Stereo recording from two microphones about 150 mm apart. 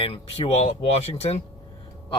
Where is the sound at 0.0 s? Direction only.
40° left (ahead or behind).